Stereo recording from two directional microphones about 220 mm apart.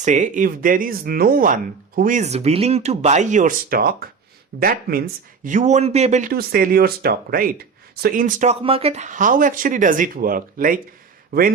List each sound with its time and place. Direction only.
0.0 s speech: 35° right (ahead or behind)